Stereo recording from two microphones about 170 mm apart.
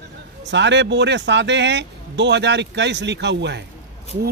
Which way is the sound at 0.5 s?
90° right.